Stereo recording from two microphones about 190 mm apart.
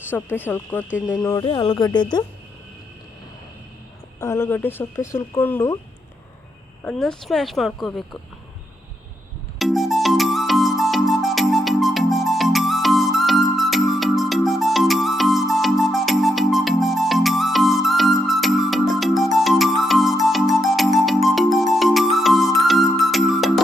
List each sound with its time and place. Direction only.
0.1 s speech: 10° left (ahead or behind)
4.2 s speech: 15° left (ahead or behind)
6.8 s speech: 5° left (ahead or behind)
9.6 s music: centre (ahead or behind)